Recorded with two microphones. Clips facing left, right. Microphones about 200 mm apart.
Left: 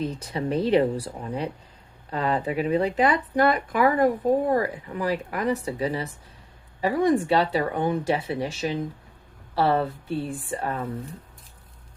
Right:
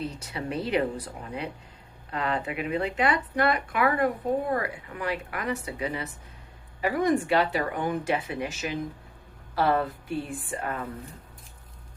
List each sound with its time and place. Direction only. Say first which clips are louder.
0.2 s speech: left 6 dB; 35° left (ahead or behind)